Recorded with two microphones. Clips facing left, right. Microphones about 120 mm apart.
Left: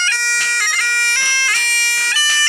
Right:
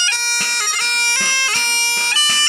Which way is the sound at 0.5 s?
25° right (ahead or behind).